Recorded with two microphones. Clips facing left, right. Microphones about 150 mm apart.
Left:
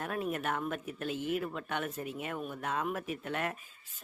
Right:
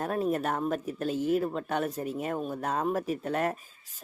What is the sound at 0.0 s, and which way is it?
Speech, 35° right (ahead or behind).